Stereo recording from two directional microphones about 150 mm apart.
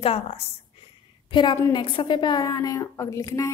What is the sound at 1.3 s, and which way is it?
A woman's voice, 30° left (ahead or behind).